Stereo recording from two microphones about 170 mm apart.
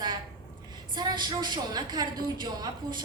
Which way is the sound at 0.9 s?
25° right (ahead or behind).